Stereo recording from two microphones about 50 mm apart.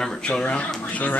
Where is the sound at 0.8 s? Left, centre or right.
Left.